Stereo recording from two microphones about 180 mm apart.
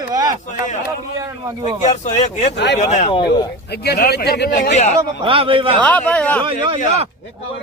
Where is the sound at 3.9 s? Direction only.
60° left (ahead or behind).